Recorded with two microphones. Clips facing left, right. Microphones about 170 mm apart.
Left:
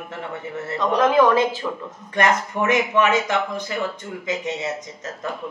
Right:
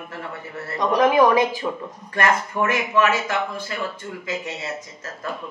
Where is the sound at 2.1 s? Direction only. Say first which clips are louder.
Left 1 dB; 20° left (ahead or behind).